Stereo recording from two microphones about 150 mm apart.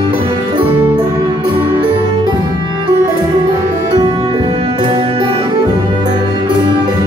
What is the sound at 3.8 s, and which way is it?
Music, 30° right (ahead or behind).